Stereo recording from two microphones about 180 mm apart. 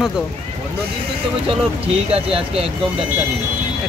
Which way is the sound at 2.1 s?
30° right (ahead or behind).